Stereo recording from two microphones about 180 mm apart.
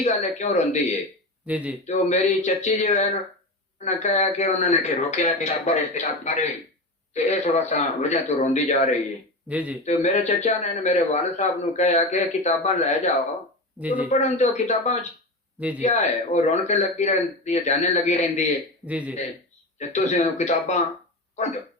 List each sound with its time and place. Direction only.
0.0 s a man's voice: 40° left (ahead or behind)
1.5 s speech: 5° right (ahead or behind)
1.9 s a man's voice: 40° left (ahead or behind)
9.5 s speech: 5° right (ahead or behind)
9.8 s a man's voice: 40° left (ahead or behind)
13.7 s speech: 10° right (ahead or behind)
14.1 s a man's voice: 40° left (ahead or behind)
15.5 s speech: 10° right (ahead or behind)
15.8 s a man's voice: 40° left (ahead or behind)
18.9 s speech: 10° right (ahead or behind)
19.9 s a man's voice: 35° left (ahead or behind)